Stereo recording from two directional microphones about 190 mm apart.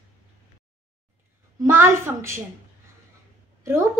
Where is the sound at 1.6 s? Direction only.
15° right (ahead or behind).